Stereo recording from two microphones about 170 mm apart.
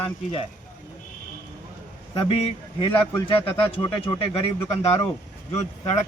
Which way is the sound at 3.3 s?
30° left (ahead or behind).